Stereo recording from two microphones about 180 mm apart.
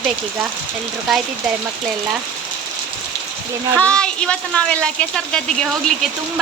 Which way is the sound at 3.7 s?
5° left (ahead or behind).